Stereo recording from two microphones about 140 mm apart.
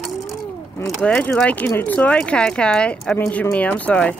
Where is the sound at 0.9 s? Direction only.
5° left (ahead or behind).